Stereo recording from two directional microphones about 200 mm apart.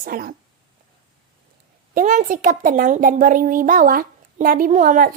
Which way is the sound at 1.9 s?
40° right (ahead or behind).